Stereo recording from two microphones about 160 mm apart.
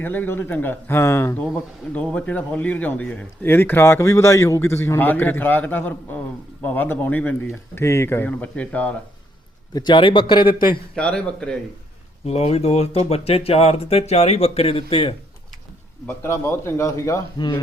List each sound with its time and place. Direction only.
0.0 s a man's voice: 10° left (ahead or behind)
9.7 s speech: 30° left (ahead or behind)
10.9 s a man's voice: 5° left (ahead or behind)
12.2 s speech: 40° left (ahead or behind)
16.0 s a man's voice: 15° left (ahead or behind)